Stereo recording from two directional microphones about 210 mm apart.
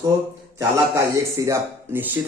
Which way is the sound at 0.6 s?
15° right (ahead or behind).